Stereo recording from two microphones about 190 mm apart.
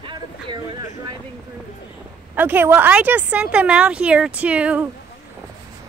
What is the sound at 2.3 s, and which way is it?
A woman's voice, 10° right (ahead or behind).